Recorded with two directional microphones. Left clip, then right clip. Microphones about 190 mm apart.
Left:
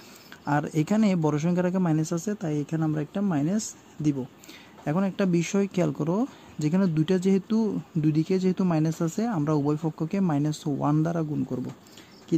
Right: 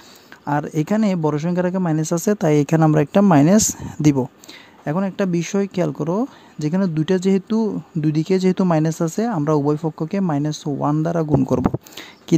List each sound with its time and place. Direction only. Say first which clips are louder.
0.5 s speech: right 5 dB; 20° right (ahead or behind); by 4.3 s 40° right (ahead or behind)
4.8 s speech: right 5 dB; 20° right (ahead or behind)
11.4 s speech: right 14 dB; 45° right (ahead or behind)